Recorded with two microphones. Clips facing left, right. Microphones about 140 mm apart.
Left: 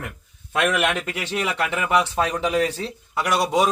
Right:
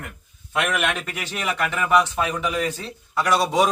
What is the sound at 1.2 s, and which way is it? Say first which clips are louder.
Speech: even; 25° left (ahead or behind).